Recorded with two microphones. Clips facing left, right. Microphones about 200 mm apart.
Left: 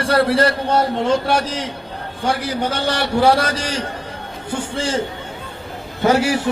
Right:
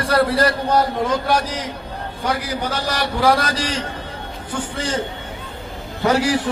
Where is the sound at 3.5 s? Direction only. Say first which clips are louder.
Even; 70° left (ahead or behind).